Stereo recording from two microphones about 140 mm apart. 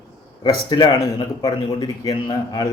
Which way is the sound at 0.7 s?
30° left (ahead or behind).